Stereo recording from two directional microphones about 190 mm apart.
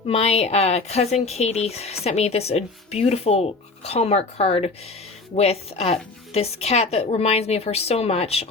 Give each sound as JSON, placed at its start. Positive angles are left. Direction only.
{"t": 0.1, "sound": "speech", "side_deg": 30}